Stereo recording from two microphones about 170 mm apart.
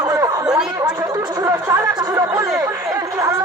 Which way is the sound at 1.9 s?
20° right (ahead or behind).